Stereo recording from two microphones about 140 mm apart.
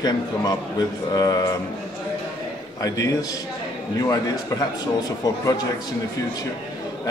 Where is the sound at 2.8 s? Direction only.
25° left (ahead or behind).